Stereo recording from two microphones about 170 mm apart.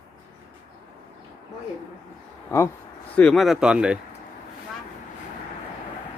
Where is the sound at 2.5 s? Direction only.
15° left (ahead or behind).